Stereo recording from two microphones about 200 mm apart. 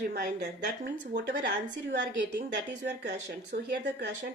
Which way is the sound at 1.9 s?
60° right (ahead or behind).